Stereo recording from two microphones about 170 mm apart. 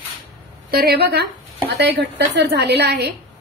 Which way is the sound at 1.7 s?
75° right (ahead or behind).